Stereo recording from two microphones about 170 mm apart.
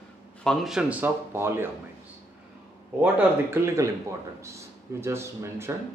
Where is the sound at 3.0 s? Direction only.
10° right (ahead or behind).